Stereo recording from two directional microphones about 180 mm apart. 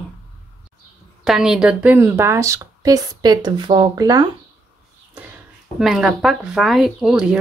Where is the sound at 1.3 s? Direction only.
Centre (ahead or behind); by 4.2 s 20° right (ahead or behind).